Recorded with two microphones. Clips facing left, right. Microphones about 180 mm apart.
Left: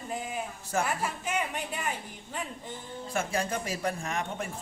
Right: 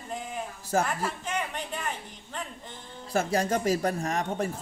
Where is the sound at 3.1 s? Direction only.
40° right (ahead or behind).